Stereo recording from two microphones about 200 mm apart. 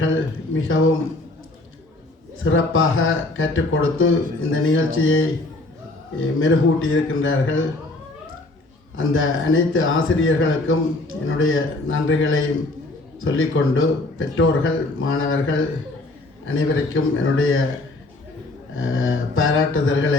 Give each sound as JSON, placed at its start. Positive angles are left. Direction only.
{"t": 0.0, "sound": "speech", "side_deg": 80}
{"t": 2.4, "sound": "speech", "side_deg": 85}
{"t": 9.0, "sound": "speech", "side_deg": 90}
{"t": 18.8, "sound": "speech", "side_deg": 90}